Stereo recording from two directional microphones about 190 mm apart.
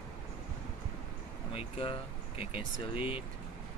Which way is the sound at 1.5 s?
30° left (ahead or behind).